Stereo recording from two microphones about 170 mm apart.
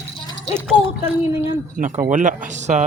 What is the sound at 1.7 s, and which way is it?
Speech, 50° right (ahead or behind).